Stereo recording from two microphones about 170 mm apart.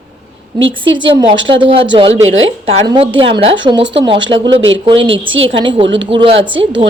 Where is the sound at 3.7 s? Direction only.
90° right.